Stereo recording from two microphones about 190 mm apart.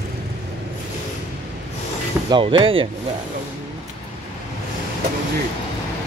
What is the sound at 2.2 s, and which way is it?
Speech, 25° right (ahead or behind).